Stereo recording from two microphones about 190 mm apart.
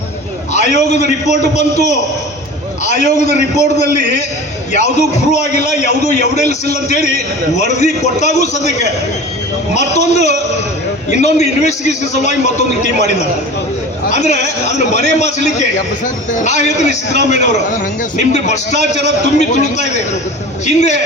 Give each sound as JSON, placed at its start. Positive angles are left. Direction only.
{"t": 0.5, "sound": "a man's voice", "side_deg": 35}